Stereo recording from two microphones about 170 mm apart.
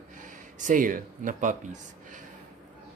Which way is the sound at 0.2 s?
50° right (ahead or behind).